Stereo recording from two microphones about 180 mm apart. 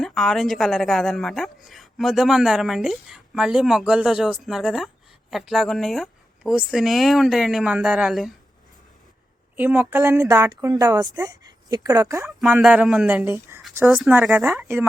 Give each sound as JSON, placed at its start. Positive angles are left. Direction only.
{"t": 0.0, "sound": "a woman's voice", "side_deg": 0}
{"t": 9.6, "sound": "a woman's voice", "side_deg": -10}
{"t": 12.4, "sound": "a woman's voice", "side_deg": 0}
{"t": 14.5, "sound": "speech", "side_deg": -15}